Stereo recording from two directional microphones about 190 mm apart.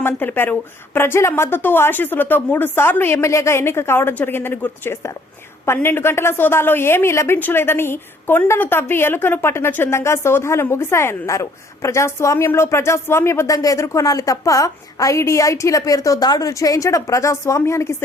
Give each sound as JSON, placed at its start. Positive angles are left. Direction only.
{"t": 0.0, "sound": "a woman's voice", "side_deg": 10}